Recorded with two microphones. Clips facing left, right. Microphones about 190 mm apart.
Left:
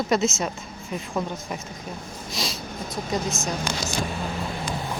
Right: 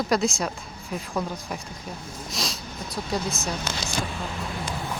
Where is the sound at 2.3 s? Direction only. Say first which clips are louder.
Left 2 dB; centre (ahead or behind).